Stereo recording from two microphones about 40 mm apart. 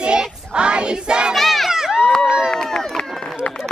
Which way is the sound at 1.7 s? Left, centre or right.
Centre.